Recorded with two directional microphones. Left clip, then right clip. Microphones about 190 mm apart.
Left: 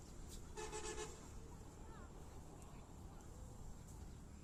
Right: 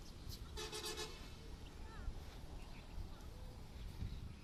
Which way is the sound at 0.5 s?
50° right (ahead or behind).